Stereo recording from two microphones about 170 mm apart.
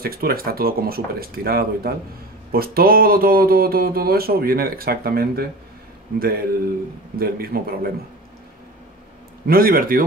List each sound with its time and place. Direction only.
0.0 s speech: 60° right (ahead or behind)
9.5 s speech: 60° right (ahead or behind)